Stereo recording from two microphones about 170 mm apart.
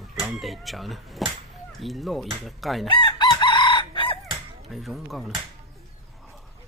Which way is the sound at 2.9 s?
25° left (ahead or behind).